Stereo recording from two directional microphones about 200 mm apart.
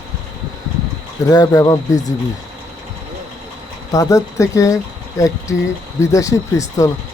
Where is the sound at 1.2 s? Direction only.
20° left (ahead or behind).